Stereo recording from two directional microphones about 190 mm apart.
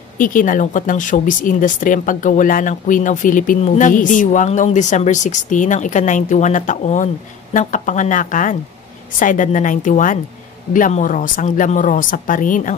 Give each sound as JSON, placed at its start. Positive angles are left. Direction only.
{"t": 0.2, "sound": "speech", "side_deg": 45}